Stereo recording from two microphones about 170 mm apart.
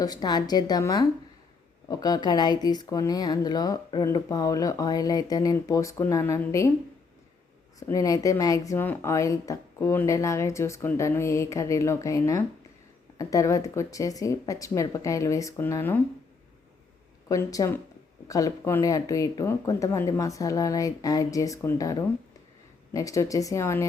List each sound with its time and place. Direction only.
0.0 s speech: 25° left (ahead or behind)
7.8 s speech: 20° left (ahead or behind)
17.2 s speech: 20° left (ahead or behind)